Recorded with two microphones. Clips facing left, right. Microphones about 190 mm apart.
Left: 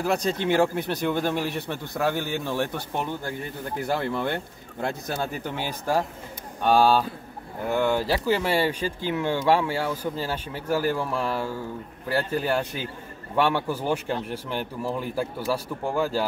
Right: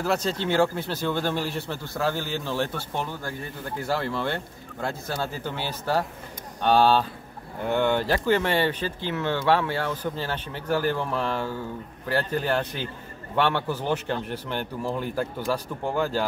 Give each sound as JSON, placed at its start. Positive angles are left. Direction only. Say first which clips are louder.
{"t": 0.0, "sound": "speech", "louder": "left 1 dB", "side_deg": 15}